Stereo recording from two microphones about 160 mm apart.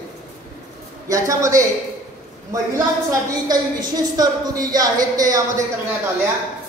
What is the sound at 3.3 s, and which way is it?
A woman's voice, 25° right (ahead or behind).